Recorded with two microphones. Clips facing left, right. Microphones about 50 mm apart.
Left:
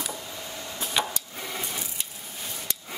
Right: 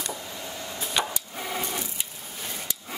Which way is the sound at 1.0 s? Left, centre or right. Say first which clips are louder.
Even; centre.